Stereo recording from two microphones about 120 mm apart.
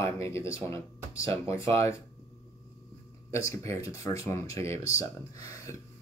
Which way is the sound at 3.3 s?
25° left (ahead or behind).